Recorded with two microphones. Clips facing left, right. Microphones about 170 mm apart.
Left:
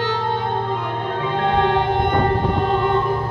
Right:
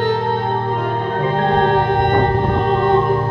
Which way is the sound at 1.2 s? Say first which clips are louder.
Right 3 dB; 45° right (ahead or behind).